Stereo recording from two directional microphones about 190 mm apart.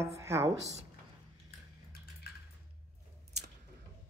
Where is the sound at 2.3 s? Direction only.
55° left (ahead or behind).